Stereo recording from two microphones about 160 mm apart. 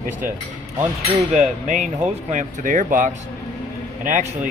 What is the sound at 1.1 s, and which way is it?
Speech, 45° right (ahead or behind).